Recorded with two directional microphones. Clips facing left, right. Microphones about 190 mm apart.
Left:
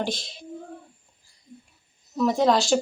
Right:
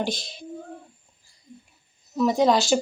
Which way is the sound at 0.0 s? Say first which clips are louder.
Right 1 dB; centre (ahead or behind).